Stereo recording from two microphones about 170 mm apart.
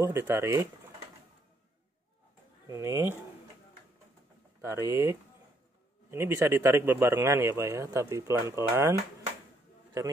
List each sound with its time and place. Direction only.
0.0 s speech: 15° right (ahead or behind)
2.6 s speech: 15° right (ahead or behind)
4.6 s speech: 15° right (ahead or behind)